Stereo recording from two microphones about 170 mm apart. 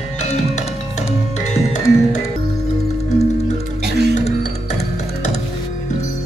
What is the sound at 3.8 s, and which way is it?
Music, 75° right (ahead or behind).